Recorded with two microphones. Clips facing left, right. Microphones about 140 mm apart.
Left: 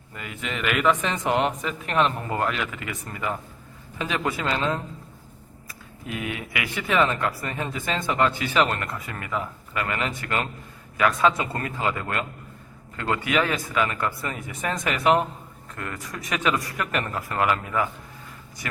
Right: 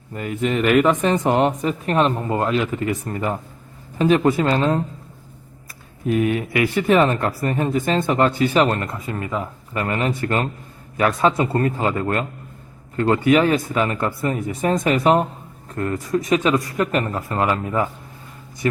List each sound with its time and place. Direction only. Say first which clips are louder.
0.1 s speech: right 11 dB; 40° right (ahead or behind)
6.1 s speech: right 12 dB; 45° right (ahead or behind)